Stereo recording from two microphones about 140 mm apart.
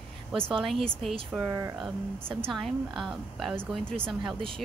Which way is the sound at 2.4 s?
Centre (ahead or behind).